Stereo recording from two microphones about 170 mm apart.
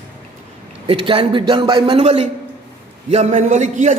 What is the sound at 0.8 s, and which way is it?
A man's voice, 30° right (ahead or behind).